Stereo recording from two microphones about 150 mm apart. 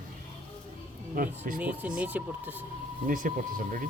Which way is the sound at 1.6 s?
10° right (ahead or behind).